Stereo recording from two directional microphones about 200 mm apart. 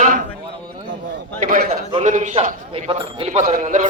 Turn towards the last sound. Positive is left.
turn(degrees=-40)  # may be behind; listen again after turning